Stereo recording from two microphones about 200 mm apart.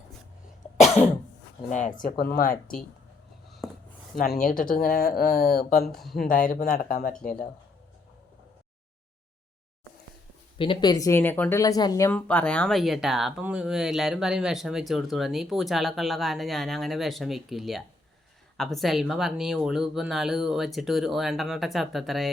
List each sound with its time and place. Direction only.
0.8 s cough: 35° left (ahead or behind)
1.7 s speech: 40° left (ahead or behind)
3.6 s a sound: centre (ahead or behind)
4.2 s speech: 45° left (ahead or behind)
5.9 s speech: centre (ahead or behind)
6.1 s speech: 45° left (ahead or behind)
10.6 s speech: 25° left (ahead or behind); by 22.3 s centre (ahead or behind)